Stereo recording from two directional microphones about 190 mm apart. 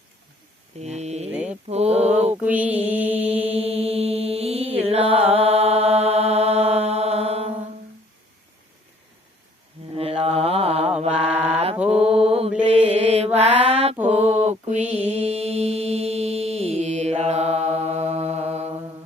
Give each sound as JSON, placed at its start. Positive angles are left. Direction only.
{"t": 0.8, "sound": "mantra", "side_deg": -35}
{"t": 1.3, "sound": "mantra", "side_deg": -10}
{"t": 1.6, "sound": "mantra", "side_deg": -35}
{"t": 2.3, "sound": "mantra", "side_deg": -10}
{"t": 3.6, "sound": "mantra", "side_deg": -30}
{"t": 9.9, "sound": "mantra", "side_deg": -30}